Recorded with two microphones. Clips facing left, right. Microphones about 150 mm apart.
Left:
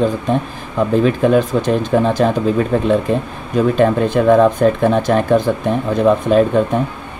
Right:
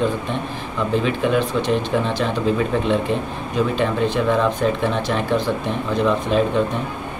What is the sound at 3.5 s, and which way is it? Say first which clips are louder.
Speech: left 7 dB; 45° left (ahead or behind).